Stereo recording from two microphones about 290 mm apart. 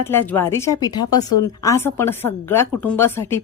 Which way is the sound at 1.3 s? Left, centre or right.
Left.